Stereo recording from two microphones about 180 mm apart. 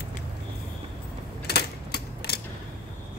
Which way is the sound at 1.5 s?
65° left (ahead or behind).